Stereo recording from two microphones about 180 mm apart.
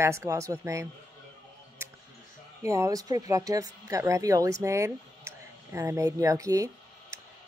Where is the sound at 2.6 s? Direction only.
15° right (ahead or behind).